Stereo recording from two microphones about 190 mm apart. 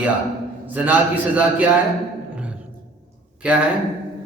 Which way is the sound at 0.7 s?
10° right (ahead or behind).